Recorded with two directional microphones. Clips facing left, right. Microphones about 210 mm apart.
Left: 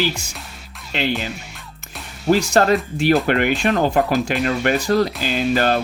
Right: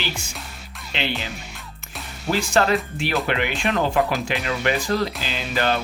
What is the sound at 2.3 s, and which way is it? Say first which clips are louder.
Speech: left 5 dB; 40° left (ahead or behind).